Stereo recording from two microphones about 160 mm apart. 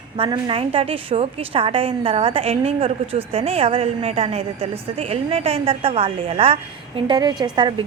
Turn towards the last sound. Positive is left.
turn(degrees=-25)  # may be behind; listen again after turning